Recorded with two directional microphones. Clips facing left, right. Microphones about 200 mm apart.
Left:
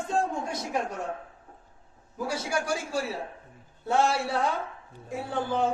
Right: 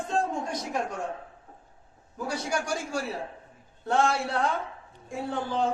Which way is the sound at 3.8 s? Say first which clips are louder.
Even; 5° left (ahead or behind).